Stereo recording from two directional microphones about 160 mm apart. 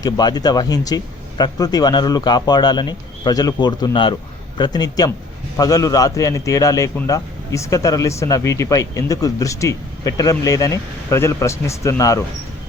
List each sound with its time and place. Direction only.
0.0 s a man's voice: 25° left (ahead or behind)